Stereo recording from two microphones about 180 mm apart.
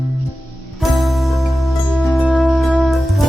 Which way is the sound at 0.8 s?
Centre (ahead or behind).